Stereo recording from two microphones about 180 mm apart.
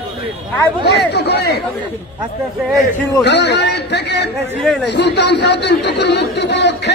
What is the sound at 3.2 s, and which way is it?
Speech, 75° left (ahead or behind).